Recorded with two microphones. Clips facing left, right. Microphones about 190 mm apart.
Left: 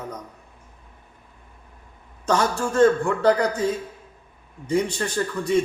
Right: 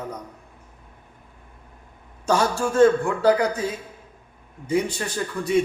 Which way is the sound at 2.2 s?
10° right (ahead or behind).